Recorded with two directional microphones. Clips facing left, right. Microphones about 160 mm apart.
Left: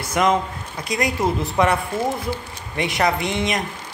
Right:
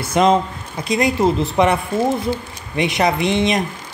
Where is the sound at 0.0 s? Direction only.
25° right (ahead or behind).